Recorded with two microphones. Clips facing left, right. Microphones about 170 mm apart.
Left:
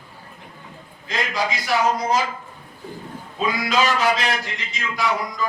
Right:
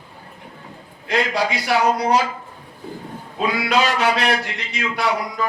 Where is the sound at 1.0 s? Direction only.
65° right (ahead or behind).